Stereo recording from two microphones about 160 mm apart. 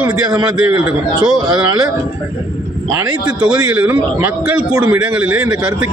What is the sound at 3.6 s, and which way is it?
A man's voice, 10° right (ahead or behind).